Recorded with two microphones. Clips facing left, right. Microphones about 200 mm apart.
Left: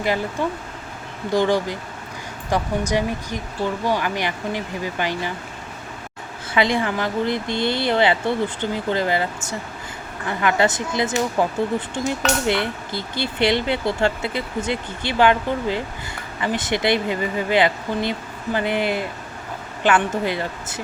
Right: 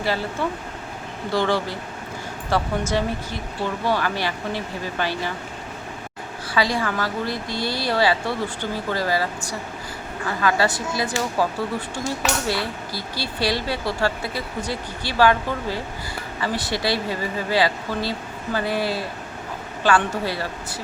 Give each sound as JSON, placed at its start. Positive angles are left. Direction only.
{"t": 0.0, "sound": "speech", "side_deg": 15}
{"t": 6.5, "sound": "speech", "side_deg": 20}